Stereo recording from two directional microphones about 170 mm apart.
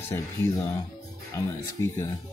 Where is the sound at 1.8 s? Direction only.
15° left (ahead or behind).